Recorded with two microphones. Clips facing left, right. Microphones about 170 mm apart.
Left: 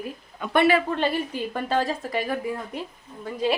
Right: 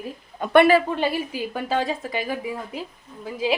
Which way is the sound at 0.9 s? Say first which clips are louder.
Even; 10° right (ahead or behind).